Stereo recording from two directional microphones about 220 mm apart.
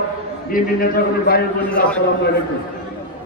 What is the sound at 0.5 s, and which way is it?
Speech, 40° left (ahead or behind).